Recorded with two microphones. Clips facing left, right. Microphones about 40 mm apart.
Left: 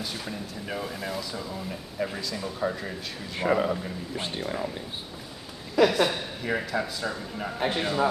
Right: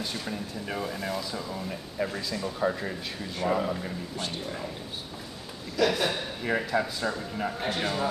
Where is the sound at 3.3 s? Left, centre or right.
Left.